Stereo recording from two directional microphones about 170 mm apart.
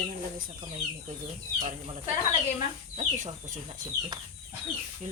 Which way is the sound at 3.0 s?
45° right (ahead or behind).